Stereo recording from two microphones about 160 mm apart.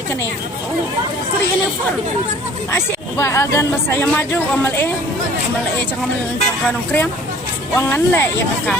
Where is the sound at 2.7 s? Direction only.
15° left (ahead or behind).